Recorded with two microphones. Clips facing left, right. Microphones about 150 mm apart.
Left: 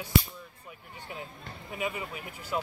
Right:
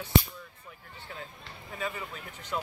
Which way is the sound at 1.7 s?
15° left (ahead or behind).